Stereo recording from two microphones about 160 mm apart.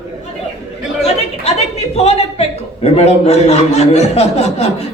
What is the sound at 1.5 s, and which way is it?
A man's voice, 40° left (ahead or behind).